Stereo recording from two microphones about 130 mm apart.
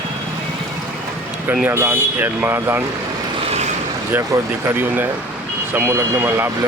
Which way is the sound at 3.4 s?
60° right (ahead or behind).